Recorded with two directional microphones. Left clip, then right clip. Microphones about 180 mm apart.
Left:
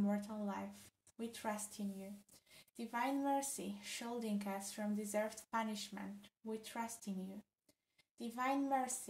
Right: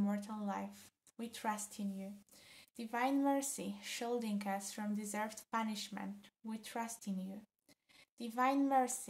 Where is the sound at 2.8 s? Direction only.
40° right (ahead or behind).